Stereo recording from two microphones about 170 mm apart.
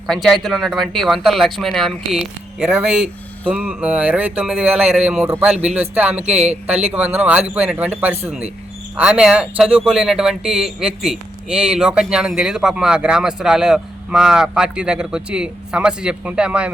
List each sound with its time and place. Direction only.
0.1 s speech: centre (ahead or behind)